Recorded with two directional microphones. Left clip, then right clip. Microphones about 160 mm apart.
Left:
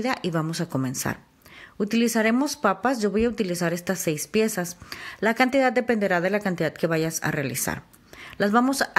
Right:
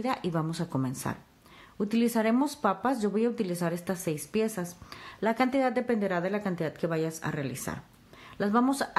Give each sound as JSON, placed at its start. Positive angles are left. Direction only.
{"t": 0.0, "sound": "a woman's voice", "side_deg": 15}